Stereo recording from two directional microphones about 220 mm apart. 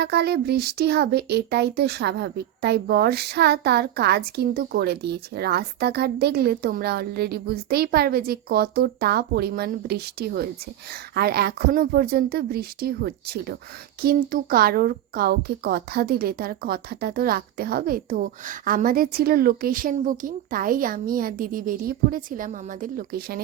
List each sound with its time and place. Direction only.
0.0 s speech: 45° right (ahead or behind)